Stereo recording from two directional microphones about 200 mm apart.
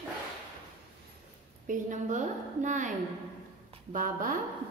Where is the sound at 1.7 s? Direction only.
40° right (ahead or behind).